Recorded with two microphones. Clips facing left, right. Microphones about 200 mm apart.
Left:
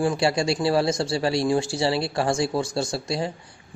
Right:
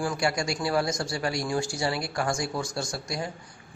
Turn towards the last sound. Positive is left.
turn(degrees=25)  # may be behind; listen again after turning